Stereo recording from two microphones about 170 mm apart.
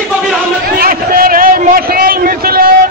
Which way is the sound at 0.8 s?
60° right (ahead or behind).